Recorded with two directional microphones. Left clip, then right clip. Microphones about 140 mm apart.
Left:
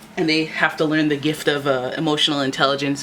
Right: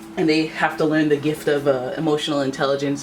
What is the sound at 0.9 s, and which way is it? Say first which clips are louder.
Speech: right 1 dB; 35° left (ahead or behind).